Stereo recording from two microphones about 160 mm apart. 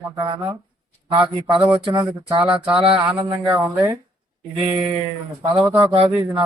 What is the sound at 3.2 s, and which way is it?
Speech, 30° right (ahead or behind).